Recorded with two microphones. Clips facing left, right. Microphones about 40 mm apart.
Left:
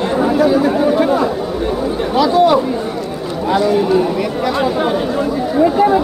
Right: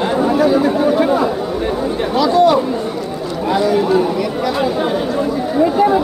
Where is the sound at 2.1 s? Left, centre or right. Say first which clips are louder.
Left 1 dB; centre.